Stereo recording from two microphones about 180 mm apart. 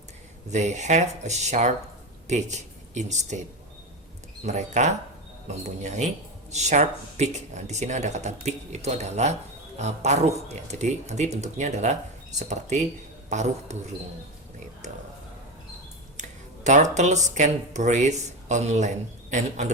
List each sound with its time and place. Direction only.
0.5 s speech: 40° right (ahead or behind)
4.4 s speech: 40° right (ahead or behind)
16.6 s speech: 40° right (ahead or behind)